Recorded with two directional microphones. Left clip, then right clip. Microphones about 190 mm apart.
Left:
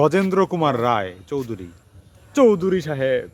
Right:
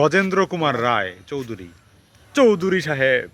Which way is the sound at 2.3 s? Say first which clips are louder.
Even; 5° left (ahead or behind).